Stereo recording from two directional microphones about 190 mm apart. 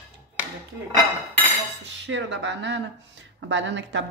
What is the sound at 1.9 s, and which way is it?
Speech, 70° right (ahead or behind).